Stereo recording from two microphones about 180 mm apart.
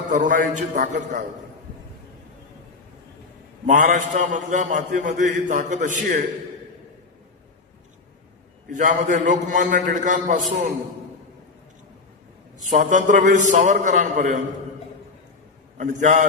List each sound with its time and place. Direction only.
0.1 s a man's voice: 45° right (ahead or behind)
3.7 s a man's voice: 45° right (ahead or behind)
8.7 s a man's voice: 45° right (ahead or behind)
12.7 s a man's voice: 45° right (ahead or behind)
15.8 s a man's voice: 45° right (ahead or behind)